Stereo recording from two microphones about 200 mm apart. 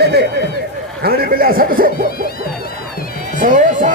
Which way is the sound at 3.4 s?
40° right (ahead or behind).